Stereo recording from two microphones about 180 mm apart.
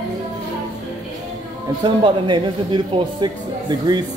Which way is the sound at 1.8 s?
25° right (ahead or behind).